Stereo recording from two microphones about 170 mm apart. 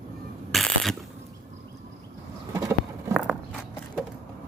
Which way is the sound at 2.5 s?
20° right (ahead or behind).